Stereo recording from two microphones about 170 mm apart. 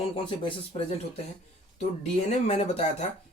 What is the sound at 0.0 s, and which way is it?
Speech, 30° left (ahead or behind).